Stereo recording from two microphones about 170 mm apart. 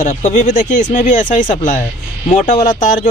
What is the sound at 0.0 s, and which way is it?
Speech, 45° left (ahead or behind).